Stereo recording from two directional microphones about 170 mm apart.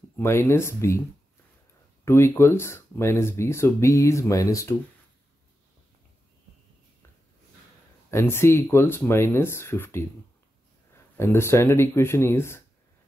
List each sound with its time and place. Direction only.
0.2 s speech: 15° left (ahead or behind)
2.0 s speech: 15° left (ahead or behind)
8.1 s speech: 15° left (ahead or behind)
11.1 s speech: 15° left (ahead or behind)